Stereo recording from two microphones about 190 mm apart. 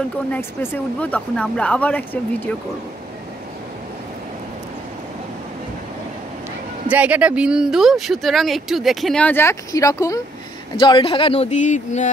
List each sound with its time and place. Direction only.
0.3 s speech: 10° left (ahead or behind)
6.9 s speech: 5° right (ahead or behind); by 12.1 s 40° left (ahead or behind)